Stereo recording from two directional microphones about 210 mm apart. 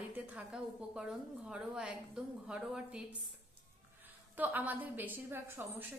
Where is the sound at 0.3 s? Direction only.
5° right (ahead or behind).